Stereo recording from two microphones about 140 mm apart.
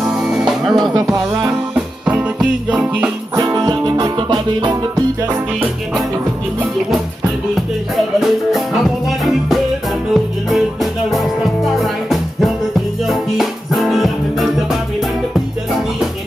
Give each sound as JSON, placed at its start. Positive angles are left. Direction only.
{"t": 0.0, "sound": "music", "side_deg": -5}
{"t": 2.0, "sound": "music", "side_deg": -5}
{"t": 3.5, "sound": "music", "side_deg": -30}
{"t": 7.9, "sound": "music", "side_deg": 0}
{"t": 10.1, "sound": "music", "side_deg": 0}